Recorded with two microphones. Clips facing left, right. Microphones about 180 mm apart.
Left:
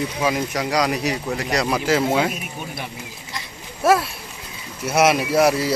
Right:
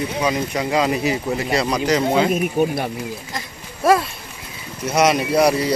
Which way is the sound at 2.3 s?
50° right (ahead or behind).